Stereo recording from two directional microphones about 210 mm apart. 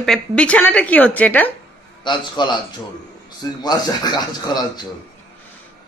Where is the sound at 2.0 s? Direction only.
20° left (ahead or behind).